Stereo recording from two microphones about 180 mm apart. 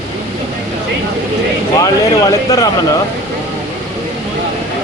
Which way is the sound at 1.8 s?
20° left (ahead or behind).